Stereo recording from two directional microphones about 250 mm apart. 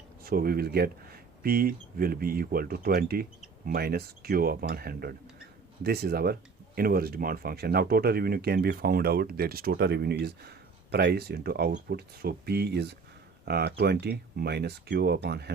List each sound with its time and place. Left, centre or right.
0.3 s speech: right